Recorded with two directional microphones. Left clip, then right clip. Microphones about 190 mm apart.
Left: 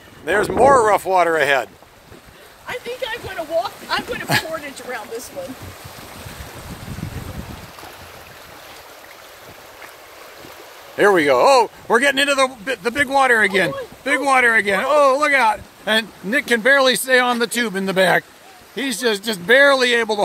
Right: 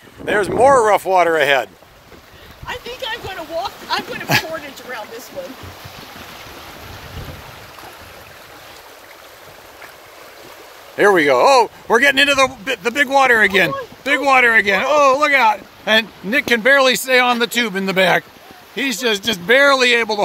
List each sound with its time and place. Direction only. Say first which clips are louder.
0.3 s speech: right 1 dB; 10° right (ahead or behind)
2.6 s a sound: even; 40° left (ahead or behind)
11.0 s a man's voice: right 2 dB; centre (ahead or behind)